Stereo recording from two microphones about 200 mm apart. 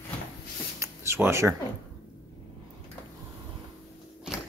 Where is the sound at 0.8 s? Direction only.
15° right (ahead or behind).